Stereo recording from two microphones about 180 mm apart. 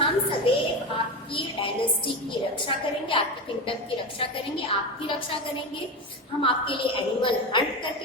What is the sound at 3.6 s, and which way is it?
A woman's voice, 30° left (ahead or behind).